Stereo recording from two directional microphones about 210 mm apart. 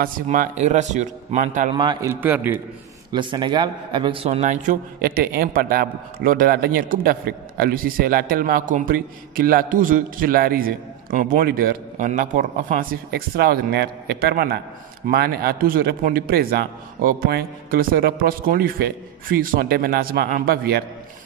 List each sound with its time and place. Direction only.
0.0 s a man's voice: 40° right (ahead or behind)
1.7 s a man's voice: 20° right (ahead or behind)
3.1 s a man's voice: 20° right (ahead or behind); by 20.8 s 45° right (ahead or behind)